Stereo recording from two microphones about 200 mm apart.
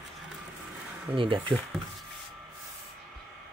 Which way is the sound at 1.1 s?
25° right (ahead or behind).